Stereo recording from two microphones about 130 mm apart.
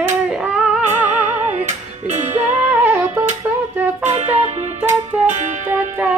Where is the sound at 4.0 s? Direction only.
60° right (ahead or behind).